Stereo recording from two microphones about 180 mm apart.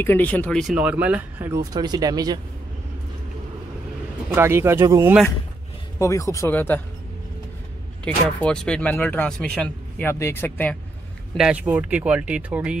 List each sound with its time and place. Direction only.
0.0 s speech: 10° left (ahead or behind); by 2.4 s 20° right (ahead or behind)
4.4 s speech: 15° right (ahead or behind)
5.9 s speech: 15° left (ahead or behind)
8.0 s speech: 5° left (ahead or behind)
11.3 s speech: 5° right (ahead or behind)